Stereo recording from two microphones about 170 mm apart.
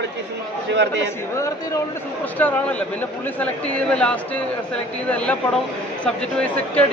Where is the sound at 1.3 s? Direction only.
20° left (ahead or behind).